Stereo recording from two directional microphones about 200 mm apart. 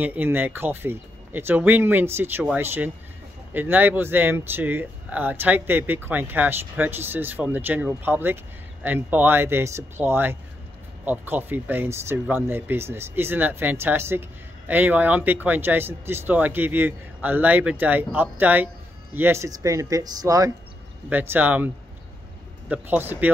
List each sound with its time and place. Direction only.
0.0 s speech: 10° right (ahead or behind)
22.7 s speech: 10° right (ahead or behind)